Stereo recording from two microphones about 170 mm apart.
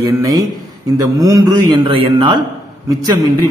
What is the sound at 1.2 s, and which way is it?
A man's voice, 20° right (ahead or behind).